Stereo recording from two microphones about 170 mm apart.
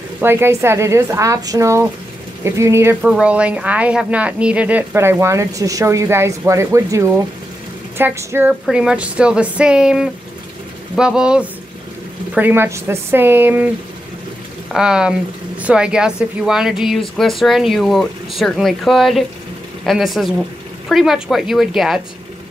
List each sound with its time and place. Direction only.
0.2 s a woman's voice: 15° right (ahead or behind)
14.7 s speech: 5° right (ahead or behind)